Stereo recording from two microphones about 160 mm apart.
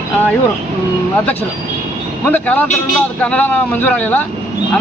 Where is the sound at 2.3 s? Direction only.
10° left (ahead or behind).